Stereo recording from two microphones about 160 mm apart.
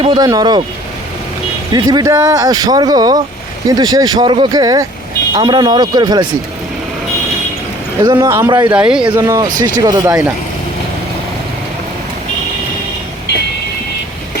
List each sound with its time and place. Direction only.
0.0 s speech: 35° right (ahead or behind)
1.7 s speech: 25° right (ahead or behind)
8.0 s speech: 25° right (ahead or behind)
8.7 s speech: 5° right (ahead or behind)
9.1 s speech: 20° right (ahead or behind)